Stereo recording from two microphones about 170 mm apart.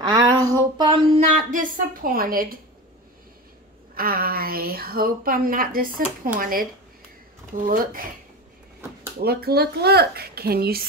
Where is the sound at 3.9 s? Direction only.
60° right (ahead or behind).